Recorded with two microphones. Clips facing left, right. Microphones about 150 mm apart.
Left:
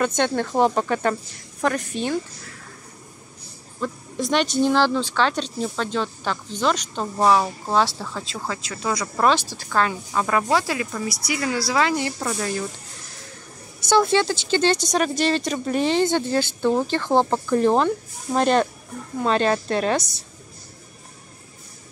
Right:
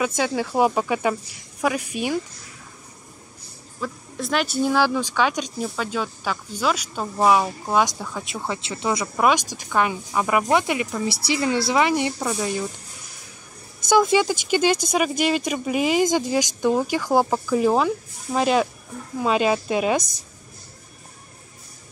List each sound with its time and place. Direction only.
0.0 s speech: 5° right (ahead or behind)
3.8 s speech: centre (ahead or behind)
13.9 s speech: 15° right (ahead or behind)